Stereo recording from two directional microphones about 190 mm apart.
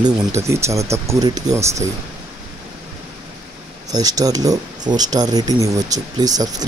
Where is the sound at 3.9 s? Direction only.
20° right (ahead or behind).